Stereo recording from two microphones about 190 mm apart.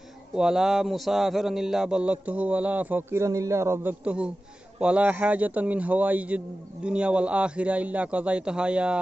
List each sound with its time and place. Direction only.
0.4 s a man's voice: centre (ahead or behind)